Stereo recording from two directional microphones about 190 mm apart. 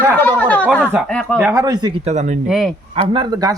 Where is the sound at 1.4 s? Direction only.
15° right (ahead or behind).